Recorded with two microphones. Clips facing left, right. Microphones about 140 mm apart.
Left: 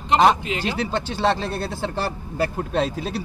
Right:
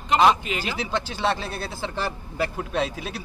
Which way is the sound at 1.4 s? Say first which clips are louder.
Left 5 dB; centre (ahead or behind).